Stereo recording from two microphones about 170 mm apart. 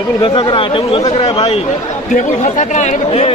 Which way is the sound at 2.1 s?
45° left (ahead or behind).